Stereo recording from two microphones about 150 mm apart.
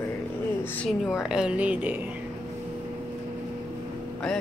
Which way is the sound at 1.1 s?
5° right (ahead or behind).